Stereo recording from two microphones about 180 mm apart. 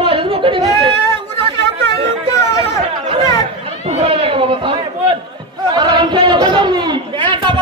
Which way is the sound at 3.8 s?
35° right (ahead or behind).